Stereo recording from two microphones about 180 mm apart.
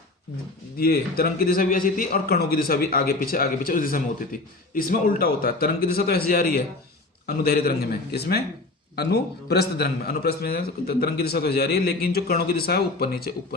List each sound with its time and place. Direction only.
0.8 s speech: 55° left (ahead or behind)